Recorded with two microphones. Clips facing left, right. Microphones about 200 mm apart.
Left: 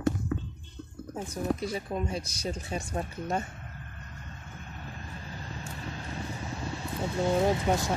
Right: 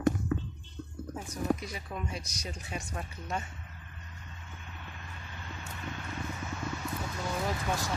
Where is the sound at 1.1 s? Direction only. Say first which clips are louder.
Left 1 dB; 30° left (ahead or behind).